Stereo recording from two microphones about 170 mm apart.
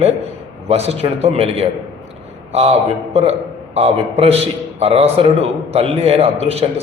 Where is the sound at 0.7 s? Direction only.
40° right (ahead or behind).